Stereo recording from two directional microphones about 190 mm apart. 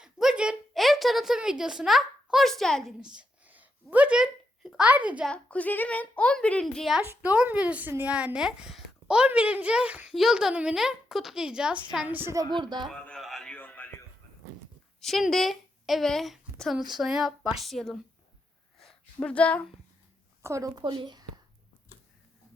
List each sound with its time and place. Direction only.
0.0 s a woman's voice: 5° right (ahead or behind)
5.3 s a woman's voice: 5° left (ahead or behind)
7.0 s speech: 10° right (ahead or behind)
12.9 s a sound: centre (ahead or behind)
15.0 s a woman's voice: centre (ahead or behind)
18.8 s a sound: 5° left (ahead or behind)
20.4 s speech: 15° right (ahead or behind)